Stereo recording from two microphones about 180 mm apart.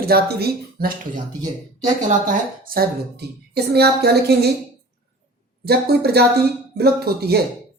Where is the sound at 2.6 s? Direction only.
60° right (ahead or behind).